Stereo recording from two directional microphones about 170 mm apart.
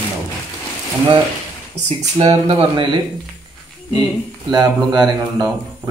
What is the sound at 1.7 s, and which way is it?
Speech, 35° right (ahead or behind).